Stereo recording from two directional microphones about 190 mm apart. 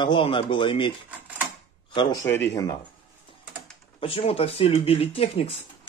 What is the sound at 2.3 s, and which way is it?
Speech, 10° left (ahead or behind).